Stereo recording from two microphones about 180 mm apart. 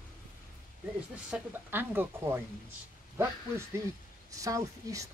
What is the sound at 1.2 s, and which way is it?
Speech, 10° right (ahead or behind).